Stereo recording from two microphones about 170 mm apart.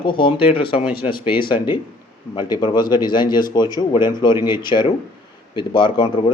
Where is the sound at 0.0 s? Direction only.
30° left (ahead or behind).